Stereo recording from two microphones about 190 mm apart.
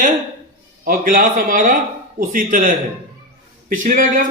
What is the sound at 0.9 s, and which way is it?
A man's voice, 45° right (ahead or behind).